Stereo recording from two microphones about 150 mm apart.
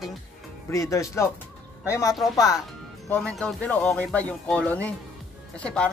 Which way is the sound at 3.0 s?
10° left (ahead or behind).